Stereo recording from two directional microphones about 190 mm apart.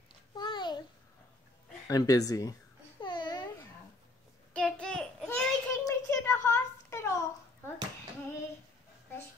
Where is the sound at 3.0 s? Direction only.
25° left (ahead or behind).